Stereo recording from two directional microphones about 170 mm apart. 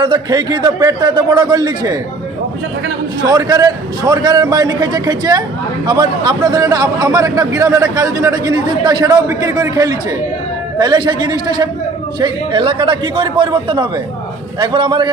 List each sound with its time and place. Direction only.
0.0 s a man's voice: 25° right (ahead or behind)
3.2 s a man's voice: 20° right (ahead or behind)